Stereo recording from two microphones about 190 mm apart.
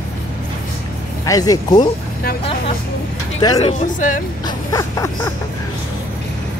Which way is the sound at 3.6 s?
35° left (ahead or behind).